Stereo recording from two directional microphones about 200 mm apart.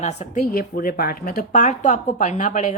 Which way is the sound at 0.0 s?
35° left (ahead or behind).